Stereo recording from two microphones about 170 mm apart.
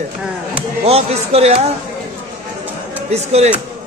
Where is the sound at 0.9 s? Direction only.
35° right (ahead or behind).